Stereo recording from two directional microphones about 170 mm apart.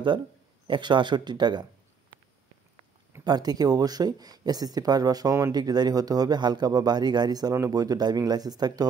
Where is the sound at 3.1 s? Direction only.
25° right (ahead or behind).